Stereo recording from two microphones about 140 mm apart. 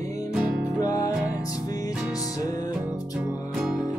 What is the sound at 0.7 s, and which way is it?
Music, 25° left (ahead or behind).